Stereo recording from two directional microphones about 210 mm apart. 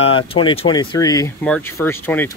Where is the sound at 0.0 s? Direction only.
25° left (ahead or behind).